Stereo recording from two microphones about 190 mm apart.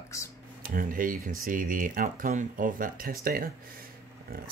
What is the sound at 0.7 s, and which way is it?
Speech, 45° right (ahead or behind).